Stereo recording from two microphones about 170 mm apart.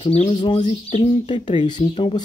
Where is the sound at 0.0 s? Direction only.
35° left (ahead or behind).